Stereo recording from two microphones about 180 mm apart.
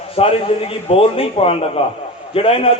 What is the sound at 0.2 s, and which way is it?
A man's voice, 30° left (ahead or behind).